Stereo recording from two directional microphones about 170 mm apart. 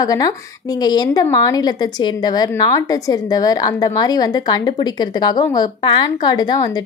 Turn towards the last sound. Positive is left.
turn(degrees=25)  # may be behind; listen again after turning